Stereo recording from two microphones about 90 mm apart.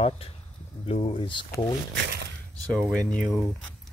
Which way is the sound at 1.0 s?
70° left (ahead or behind).